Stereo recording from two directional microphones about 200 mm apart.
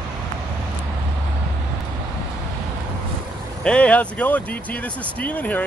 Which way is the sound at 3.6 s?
5° left (ahead or behind).